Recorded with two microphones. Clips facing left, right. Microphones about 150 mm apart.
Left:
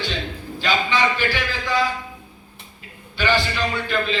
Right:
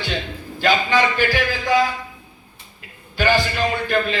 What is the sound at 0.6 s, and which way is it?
A man's voice, 45° right (ahead or behind).